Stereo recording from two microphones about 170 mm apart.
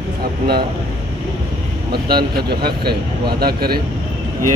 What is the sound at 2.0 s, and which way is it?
Speech, 65° right (ahead or behind).